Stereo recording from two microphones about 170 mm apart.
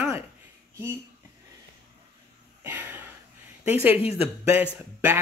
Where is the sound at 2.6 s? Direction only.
10° right (ahead or behind).